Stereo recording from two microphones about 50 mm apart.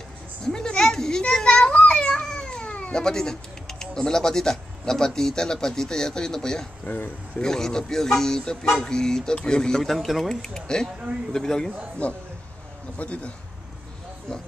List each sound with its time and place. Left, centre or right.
0.4 s a sound: centre
0.9 s cat: centre
7.3 s a man's voice: centre
10.4 s a man's voice: centre
12.0 s speech: left